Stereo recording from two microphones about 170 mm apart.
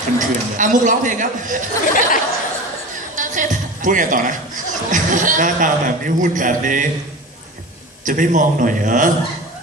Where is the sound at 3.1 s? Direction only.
50° right (ahead or behind).